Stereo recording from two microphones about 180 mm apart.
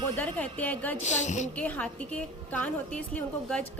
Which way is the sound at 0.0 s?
10° left (ahead or behind).